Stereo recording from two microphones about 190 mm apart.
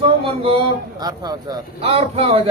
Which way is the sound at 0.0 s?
25° right (ahead or behind).